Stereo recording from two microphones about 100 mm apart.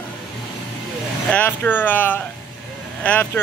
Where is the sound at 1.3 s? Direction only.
15° left (ahead or behind).